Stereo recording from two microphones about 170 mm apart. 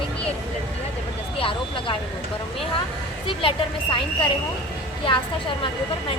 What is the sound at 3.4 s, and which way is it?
Speech, 30° left (ahead or behind).